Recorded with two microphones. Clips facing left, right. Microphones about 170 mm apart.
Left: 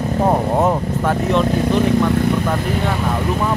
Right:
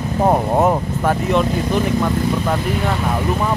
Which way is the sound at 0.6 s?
5° right (ahead or behind).